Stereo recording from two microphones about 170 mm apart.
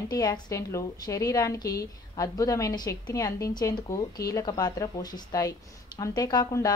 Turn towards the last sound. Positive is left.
turn(degrees=20)  # may be behind; listen again after turning